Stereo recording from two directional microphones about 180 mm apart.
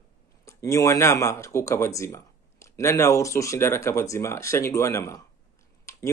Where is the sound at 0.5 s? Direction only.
15° left (ahead or behind).